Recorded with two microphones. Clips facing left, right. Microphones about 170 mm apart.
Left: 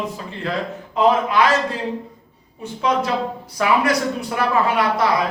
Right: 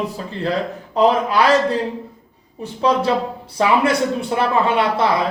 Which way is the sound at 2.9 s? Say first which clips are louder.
Right 2 dB; 35° right (ahead or behind).